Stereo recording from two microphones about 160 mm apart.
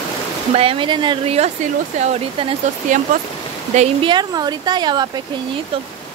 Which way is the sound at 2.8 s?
50° right (ahead or behind).